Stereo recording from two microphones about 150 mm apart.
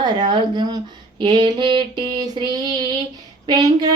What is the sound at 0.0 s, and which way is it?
Speech, 30° right (ahead or behind).